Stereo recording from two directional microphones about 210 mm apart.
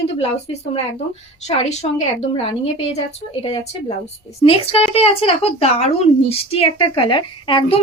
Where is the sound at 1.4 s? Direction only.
30° left (ahead or behind).